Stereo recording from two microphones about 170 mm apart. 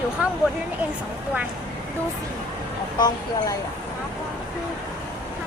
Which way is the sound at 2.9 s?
25° left (ahead or behind).